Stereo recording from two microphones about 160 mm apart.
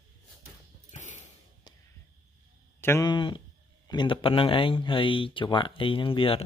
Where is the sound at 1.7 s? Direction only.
25° left (ahead or behind).